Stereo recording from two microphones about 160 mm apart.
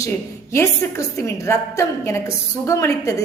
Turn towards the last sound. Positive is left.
turn(degrees=20)  # may be behind; listen again after turning